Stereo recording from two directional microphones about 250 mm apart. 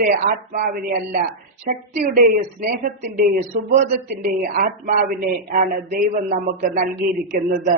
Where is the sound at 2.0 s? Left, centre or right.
Right.